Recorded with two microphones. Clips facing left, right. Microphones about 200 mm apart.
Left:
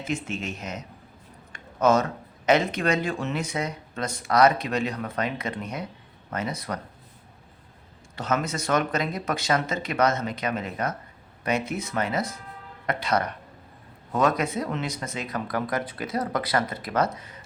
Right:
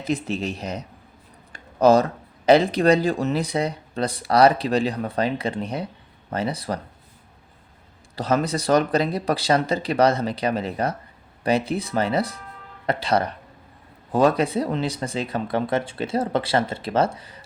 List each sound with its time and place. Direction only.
0.0 s speech: 35° right (ahead or behind)
1.5 s a sound: 35° right (ahead or behind)
2.5 s speech: 35° right (ahead or behind)
8.1 s speech: 35° right (ahead or behind)